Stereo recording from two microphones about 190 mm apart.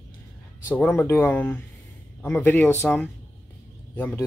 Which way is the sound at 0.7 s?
10° left (ahead or behind).